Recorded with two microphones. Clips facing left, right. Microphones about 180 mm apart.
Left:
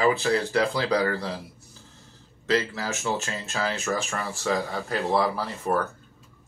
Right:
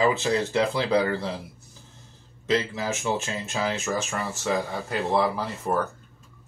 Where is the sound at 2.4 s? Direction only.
20° right (ahead or behind).